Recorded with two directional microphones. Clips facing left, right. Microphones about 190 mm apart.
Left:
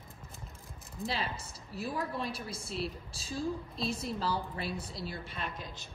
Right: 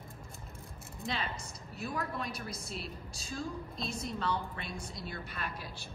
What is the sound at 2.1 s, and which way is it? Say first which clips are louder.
A woman's voice: left 2 dB; 30° left (ahead or behind).